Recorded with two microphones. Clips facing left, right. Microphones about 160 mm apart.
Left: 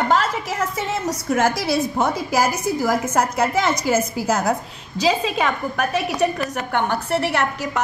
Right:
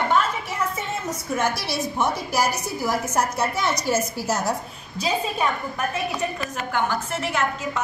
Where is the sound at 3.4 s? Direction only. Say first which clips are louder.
Left 4 dB; 90° left.